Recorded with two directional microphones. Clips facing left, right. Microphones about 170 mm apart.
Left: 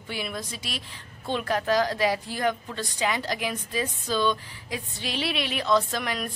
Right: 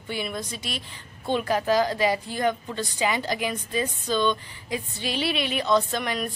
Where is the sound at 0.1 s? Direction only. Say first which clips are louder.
Right 2 dB; centre (ahead or behind).